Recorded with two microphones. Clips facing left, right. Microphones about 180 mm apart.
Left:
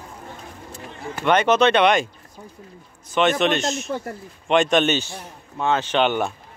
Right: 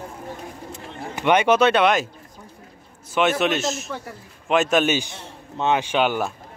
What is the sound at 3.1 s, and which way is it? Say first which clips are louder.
Speech: left 1 dB; 10° right (ahead or behind).